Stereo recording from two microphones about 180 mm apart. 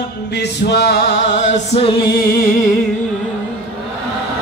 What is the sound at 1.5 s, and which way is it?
Music, 35° left (ahead or behind).